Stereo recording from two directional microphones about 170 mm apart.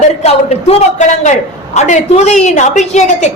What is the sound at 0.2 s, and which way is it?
A man's voice, 35° left (ahead or behind).